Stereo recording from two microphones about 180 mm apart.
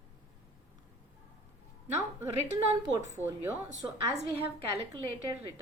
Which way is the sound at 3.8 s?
20° right (ahead or behind).